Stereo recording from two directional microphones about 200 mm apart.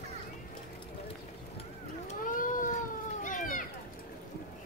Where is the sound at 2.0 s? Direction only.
40° left (ahead or behind).